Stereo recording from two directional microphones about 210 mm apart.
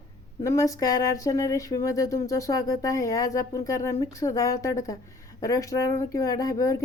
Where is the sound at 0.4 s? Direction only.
15° left (ahead or behind).